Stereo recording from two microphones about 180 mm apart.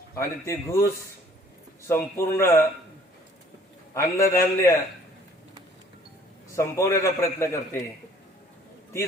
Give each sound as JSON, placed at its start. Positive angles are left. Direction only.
{"t": 0.2, "sound": "a man's voice", "side_deg": 15}
{"t": 1.9, "sound": "a man's voice", "side_deg": 15}
{"t": 3.9, "sound": "a man's voice", "side_deg": 15}
{"t": 6.6, "sound": "a man's voice", "side_deg": 15}